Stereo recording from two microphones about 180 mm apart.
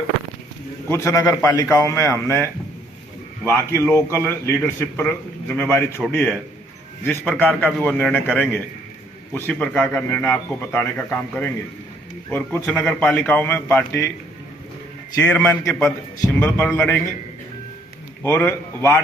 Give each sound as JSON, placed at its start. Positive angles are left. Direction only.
{"t": 0.9, "sound": "a man's voice", "side_deg": 15}
{"t": 9.3, "sound": "a man's voice", "side_deg": 5}
{"t": 15.2, "sound": "a man's voice", "side_deg": 10}
{"t": 18.2, "sound": "a man's voice", "side_deg": 10}